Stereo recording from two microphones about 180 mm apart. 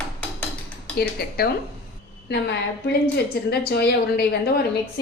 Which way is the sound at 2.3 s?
65° left (ahead or behind).